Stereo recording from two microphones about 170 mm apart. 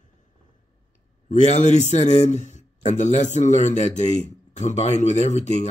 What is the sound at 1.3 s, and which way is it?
A man's voice, 45° left (ahead or behind).